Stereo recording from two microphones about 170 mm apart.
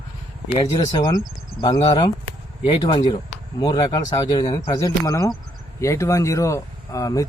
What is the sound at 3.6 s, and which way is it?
Speech, 25° left (ahead or behind).